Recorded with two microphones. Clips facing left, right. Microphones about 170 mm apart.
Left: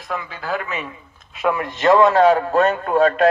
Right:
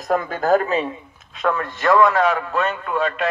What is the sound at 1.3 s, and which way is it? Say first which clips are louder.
A man's voice: left 1 dB; 10° left (ahead or behind).